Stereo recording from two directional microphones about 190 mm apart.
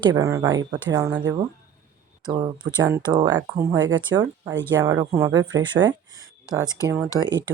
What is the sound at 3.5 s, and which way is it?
A woman's voice, 15° right (ahead or behind).